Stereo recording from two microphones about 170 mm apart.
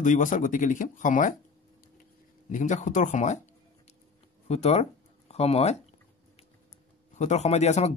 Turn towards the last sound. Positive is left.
turn(degrees=40)  # may be behind; listen again after turning